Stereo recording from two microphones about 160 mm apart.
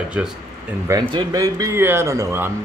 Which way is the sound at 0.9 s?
25° right (ahead or behind).